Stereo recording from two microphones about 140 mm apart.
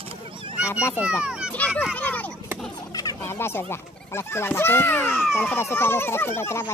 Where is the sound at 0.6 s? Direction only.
10° right (ahead or behind).